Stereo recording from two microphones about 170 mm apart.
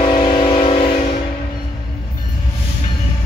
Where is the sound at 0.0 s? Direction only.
25° left (ahead or behind).